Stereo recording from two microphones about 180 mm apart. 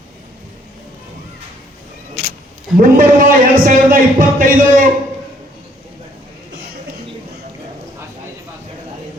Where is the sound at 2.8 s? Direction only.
50° right (ahead or behind).